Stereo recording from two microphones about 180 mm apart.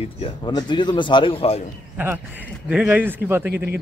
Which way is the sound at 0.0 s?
30° left (ahead or behind).